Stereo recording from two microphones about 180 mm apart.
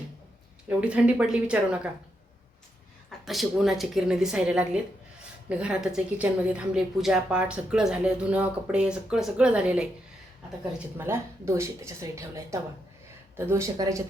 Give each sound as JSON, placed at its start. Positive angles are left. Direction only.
{"t": 0.8, "sound": "speech", "side_deg": -5}
{"t": 3.1, "sound": "a woman's voice", "side_deg": 0}